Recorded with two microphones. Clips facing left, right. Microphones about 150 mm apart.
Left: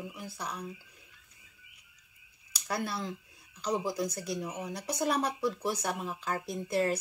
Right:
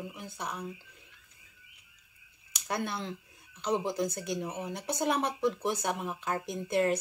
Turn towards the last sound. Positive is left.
turn(degrees=-25)  # may be behind; listen again after turning